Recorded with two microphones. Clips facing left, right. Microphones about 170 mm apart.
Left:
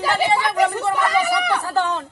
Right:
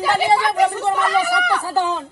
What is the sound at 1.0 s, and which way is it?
Speech, centre (ahead or behind).